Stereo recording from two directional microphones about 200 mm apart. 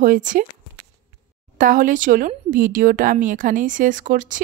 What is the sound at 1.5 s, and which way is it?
A woman's voice, 45° right (ahead or behind).